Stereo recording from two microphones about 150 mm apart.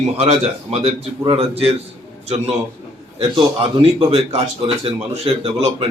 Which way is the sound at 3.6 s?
40° right (ahead or behind).